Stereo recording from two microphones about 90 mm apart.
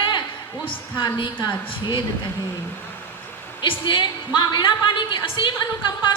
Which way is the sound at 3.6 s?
70° left (ahead or behind).